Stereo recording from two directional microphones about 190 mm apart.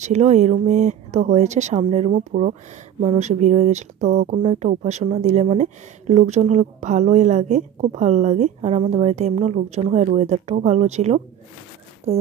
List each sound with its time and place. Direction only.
0.0 s speech: 35° right (ahead or behind)